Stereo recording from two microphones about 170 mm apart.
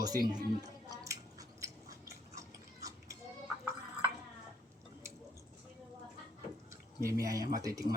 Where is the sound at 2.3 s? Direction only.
20° right (ahead or behind).